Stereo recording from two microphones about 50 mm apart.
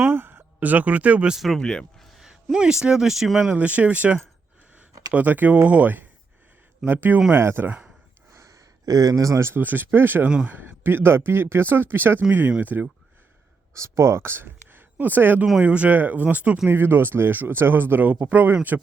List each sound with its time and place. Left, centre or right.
0.0 s a sound: right
1.5 s speech: centre
2.0 s speech: centre
3.5 s speech: right
7.3 s speech: right
8.3 s gasp: right
9.2 s speech: right
9.6 s speech: right
10.2 s speech: right
10.5 s speech: right
12.5 s speech: right
13.7 s speech: right
16.6 s speech: right